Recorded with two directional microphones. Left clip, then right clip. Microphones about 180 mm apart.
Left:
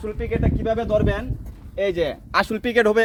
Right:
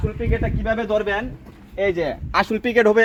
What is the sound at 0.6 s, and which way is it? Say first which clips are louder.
Speech: even; 55° left (ahead or behind).